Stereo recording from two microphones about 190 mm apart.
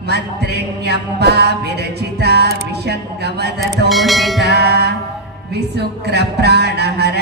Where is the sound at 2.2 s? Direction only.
60° right (ahead or behind).